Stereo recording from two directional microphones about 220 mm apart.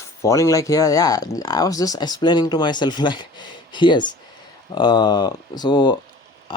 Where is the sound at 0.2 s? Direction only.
15° left (ahead or behind).